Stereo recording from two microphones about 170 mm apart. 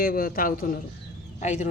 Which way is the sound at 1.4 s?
45° left (ahead or behind).